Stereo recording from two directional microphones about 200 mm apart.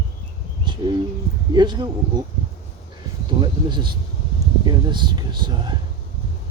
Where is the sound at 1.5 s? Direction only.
20° right (ahead or behind).